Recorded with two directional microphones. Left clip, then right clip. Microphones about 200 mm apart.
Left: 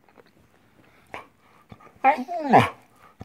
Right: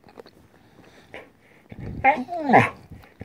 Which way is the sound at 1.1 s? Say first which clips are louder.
Left 3 dB; 30° left (ahead or behind).